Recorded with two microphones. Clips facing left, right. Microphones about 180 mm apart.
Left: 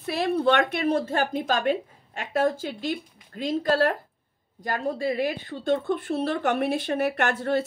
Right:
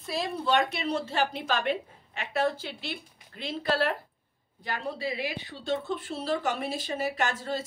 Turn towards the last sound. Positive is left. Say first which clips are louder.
# left 6 dB
turn(degrees=60)  # may be behind; listen again after turning